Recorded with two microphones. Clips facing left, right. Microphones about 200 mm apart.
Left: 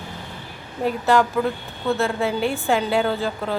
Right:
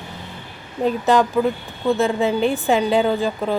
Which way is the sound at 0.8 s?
20° right (ahead or behind).